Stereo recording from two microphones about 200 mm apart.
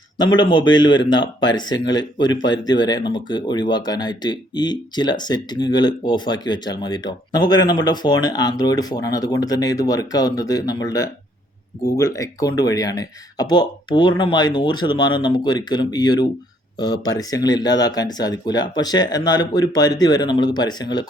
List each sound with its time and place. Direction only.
0.2 s speech: 20° left (ahead or behind)